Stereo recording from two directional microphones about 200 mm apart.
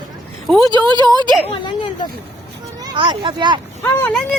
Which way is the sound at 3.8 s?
10° left (ahead or behind).